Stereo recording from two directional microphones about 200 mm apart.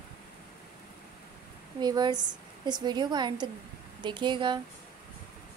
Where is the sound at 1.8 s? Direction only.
20° right (ahead or behind).